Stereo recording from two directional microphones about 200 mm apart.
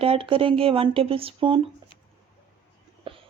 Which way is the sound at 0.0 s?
25° right (ahead or behind).